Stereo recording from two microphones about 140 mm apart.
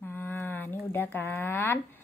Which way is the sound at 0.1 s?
15° left (ahead or behind).